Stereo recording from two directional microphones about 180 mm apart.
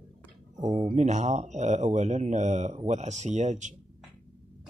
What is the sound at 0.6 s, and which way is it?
Speech, 40° right (ahead or behind).